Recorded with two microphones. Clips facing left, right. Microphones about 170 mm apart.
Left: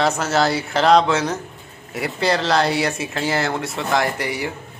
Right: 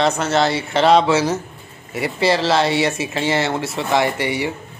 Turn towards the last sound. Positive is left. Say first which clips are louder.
# right 3 dB
turn(degrees=0)  # may be behind; listen again after turning